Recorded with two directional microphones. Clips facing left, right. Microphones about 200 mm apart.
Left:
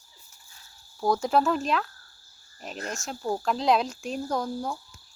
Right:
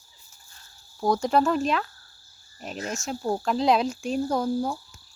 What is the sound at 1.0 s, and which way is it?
Speech, centre (ahead or behind).